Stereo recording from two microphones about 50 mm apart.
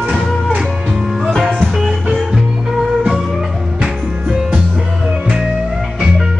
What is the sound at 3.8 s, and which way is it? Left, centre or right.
Music, right.